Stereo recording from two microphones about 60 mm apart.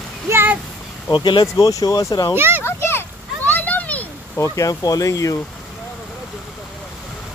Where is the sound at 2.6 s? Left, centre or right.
Left.